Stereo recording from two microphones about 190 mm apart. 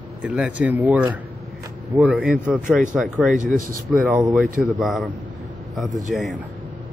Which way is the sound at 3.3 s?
45° right (ahead or behind).